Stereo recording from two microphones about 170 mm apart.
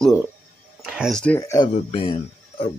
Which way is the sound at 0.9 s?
Centre (ahead or behind).